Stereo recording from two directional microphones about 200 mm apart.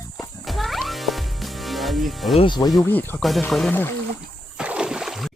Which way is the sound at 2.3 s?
25° left (ahead or behind).